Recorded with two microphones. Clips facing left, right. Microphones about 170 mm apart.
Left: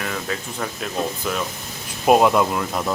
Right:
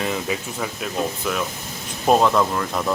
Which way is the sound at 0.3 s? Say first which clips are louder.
Right 1 dB; 5° right (ahead or behind).